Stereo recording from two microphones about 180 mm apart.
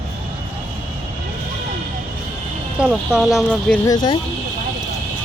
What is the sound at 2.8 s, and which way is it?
Speech, 5° right (ahead or behind).